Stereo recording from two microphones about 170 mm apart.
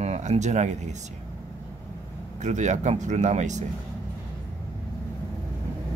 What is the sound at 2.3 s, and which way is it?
Speech, 45° right (ahead or behind).